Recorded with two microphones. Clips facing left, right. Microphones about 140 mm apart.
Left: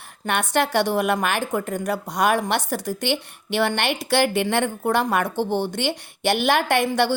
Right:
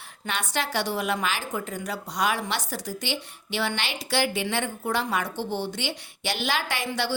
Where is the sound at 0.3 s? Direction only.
55° left (ahead or behind).